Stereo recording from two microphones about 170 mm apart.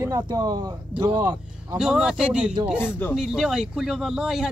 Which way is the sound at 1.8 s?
5° right (ahead or behind).